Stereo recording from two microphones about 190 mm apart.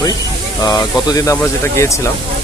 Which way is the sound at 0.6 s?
20° left (ahead or behind).